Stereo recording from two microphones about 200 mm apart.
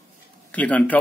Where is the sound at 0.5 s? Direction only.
5° left (ahead or behind).